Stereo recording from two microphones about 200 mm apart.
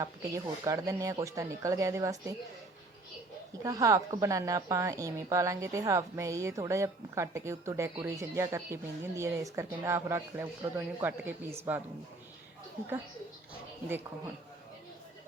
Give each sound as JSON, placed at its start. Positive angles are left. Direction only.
{"t": 0.0, "sound": "a woman's voice", "side_deg": -15}
{"t": 3.6, "sound": "a woman's voice", "side_deg": -15}